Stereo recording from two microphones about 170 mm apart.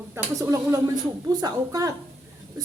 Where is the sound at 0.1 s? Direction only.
20° right (ahead or behind).